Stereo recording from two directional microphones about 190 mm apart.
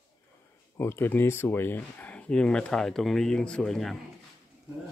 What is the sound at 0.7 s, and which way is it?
Speech, 15° left (ahead or behind).